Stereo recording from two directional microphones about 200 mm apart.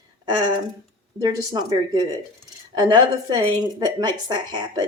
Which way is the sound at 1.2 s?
20° right (ahead or behind).